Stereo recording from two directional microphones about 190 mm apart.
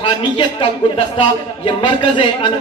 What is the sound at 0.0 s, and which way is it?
A woman's voice, 25° left (ahead or behind).